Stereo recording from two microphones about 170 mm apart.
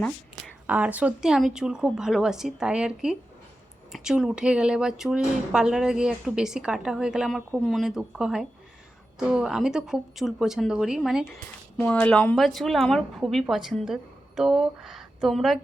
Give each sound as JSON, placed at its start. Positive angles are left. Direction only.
{"t": 0.7, "sound": "a woman's voice", "side_deg": -10}
{"t": 11.8, "sound": "a woman's voice", "side_deg": 10}